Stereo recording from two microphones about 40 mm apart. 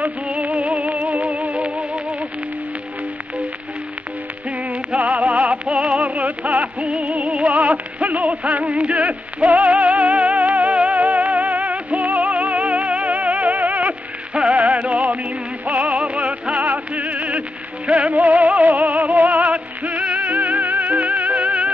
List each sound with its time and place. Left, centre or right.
0.0 s music: right
4.5 s music: right